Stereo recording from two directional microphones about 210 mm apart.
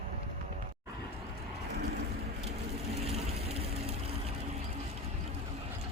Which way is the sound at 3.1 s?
30° right (ahead or behind).